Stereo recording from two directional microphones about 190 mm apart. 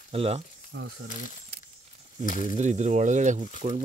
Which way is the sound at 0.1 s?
30° right (ahead or behind).